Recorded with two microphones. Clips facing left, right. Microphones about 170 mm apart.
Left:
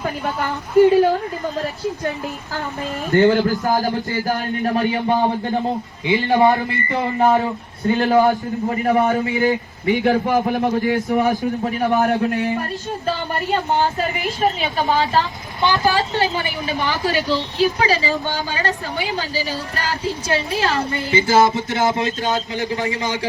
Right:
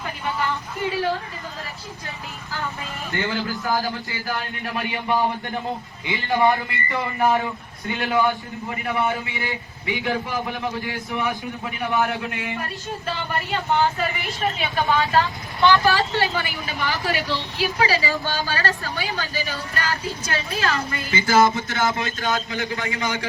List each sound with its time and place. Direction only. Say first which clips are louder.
1.6 s a man's voice: left 13 dB; 40° left (ahead or behind)
6.1 s speech: left 5 dB; 25° left (ahead or behind)
7.2 s a man's voice: left 4 dB; 35° left (ahead or behind)
15.6 s speech: even; 20° left (ahead or behind)
16.6 s a man's voice: left 5 dB; 40° left (ahead or behind)
17.0 s speech: left 5 dB; 20° left (ahead or behind)
19.3 s a man's voice: left 4 dB; 30° left (ahead or behind)
21.2 s speech: left 1 dB; 20° left (ahead or behind)